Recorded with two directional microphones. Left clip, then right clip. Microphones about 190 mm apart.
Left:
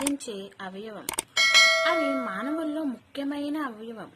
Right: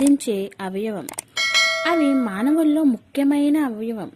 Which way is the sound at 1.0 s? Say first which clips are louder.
Left 6 dB; centre (ahead or behind).